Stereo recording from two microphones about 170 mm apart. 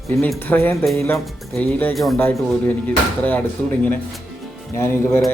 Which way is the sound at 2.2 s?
10° left (ahead or behind).